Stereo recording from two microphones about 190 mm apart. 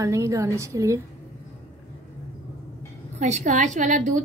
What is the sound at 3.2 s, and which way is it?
A woman's voice, 40° right (ahead or behind).